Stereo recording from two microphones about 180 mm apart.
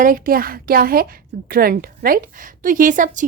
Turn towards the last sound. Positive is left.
turn(degrees=-45)  # may be behind; listen again after turning